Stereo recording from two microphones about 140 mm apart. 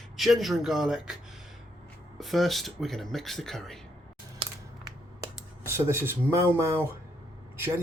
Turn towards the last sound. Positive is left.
turn(degrees=-15)  # may be behind; listen again after turning